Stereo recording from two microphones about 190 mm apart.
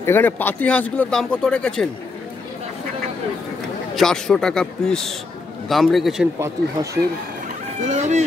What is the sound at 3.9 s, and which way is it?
A man's voice, centre (ahead or behind).